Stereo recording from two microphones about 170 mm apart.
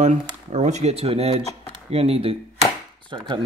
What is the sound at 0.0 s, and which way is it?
Speech, 45° right (ahead or behind).